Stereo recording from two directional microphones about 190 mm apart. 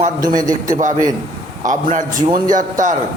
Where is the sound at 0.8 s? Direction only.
40° right (ahead or behind).